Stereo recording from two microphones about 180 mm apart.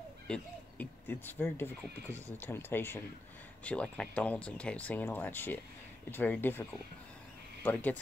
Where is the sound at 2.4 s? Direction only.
10° left (ahead or behind).